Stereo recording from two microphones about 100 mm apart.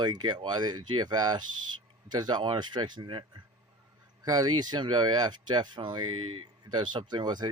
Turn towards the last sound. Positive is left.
turn(degrees=-45)  # may be behind; listen again after turning